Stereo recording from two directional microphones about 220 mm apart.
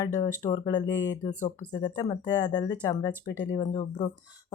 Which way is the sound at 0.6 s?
20° left (ahead or behind).